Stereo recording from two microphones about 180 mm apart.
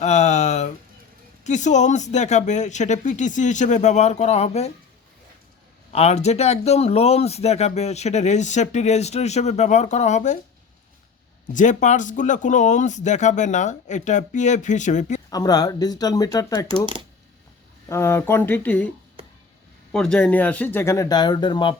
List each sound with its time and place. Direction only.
0.0 s a sound: 40° left (ahead or behind)
1.5 s speech: 40° left (ahead or behind)
5.9 s speech: 35° left (ahead or behind)
11.5 s speech: 45° left (ahead or behind)
15.3 s speech: 20° left (ahead or behind)
17.8 s speech: 15° left (ahead or behind)
19.9 s speech: 5° left (ahead or behind); by 21.8 s 25° left (ahead or behind)